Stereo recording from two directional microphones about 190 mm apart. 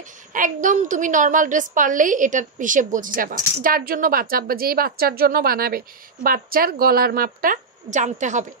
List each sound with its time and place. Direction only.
0.3 s a woman's voice: 45° right (ahead or behind)